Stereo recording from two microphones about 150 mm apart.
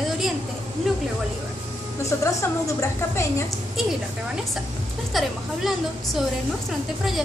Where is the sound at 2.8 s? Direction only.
20° left (ahead or behind).